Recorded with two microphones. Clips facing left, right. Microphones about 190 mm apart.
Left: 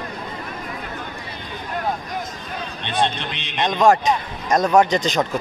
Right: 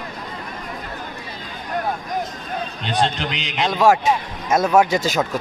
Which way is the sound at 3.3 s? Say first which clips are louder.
Right 4 dB; 90° right.